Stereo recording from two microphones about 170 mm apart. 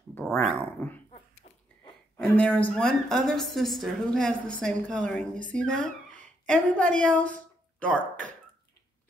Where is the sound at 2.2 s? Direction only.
5° left (ahead or behind).